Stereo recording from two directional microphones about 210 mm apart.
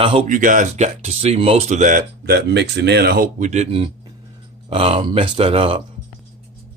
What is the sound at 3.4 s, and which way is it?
Speech, 30° right (ahead or behind).